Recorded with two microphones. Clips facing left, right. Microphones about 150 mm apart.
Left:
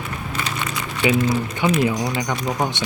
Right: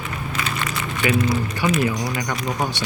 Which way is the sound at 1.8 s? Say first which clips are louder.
Left 2 dB; 20° left (ahead or behind).